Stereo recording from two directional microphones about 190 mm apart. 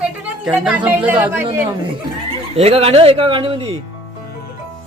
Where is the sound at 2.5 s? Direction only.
35° right (ahead or behind).